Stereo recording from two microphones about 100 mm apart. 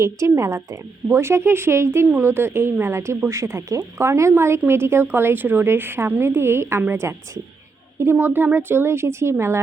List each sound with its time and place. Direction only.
0.0 s speech: 30° right (ahead or behind)